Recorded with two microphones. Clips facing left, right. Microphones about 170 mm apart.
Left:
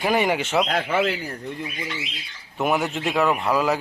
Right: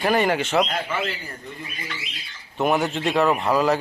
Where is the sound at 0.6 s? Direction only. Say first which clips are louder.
Left 5 dB; 75° left (ahead or behind).